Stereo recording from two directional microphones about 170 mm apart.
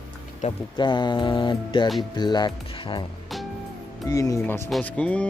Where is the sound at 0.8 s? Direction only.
25° left (ahead or behind).